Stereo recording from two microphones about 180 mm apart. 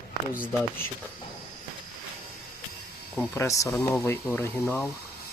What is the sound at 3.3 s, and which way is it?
Speech, 15° left (ahead or behind).